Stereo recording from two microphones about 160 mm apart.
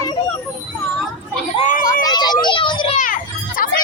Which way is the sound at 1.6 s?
60° left (ahead or behind).